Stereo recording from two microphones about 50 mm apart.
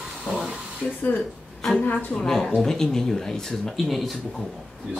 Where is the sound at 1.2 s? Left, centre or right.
Centre.